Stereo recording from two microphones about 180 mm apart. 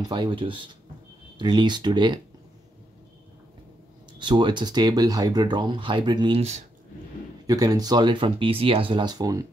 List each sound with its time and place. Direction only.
0.1 s speech: 25° right (ahead or behind)
4.2 s speech: 25° right (ahead or behind)
7.4 s speech: 20° right (ahead or behind)